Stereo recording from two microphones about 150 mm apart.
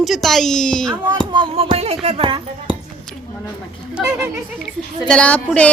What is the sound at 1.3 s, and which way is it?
Music, 35° right (ahead or behind).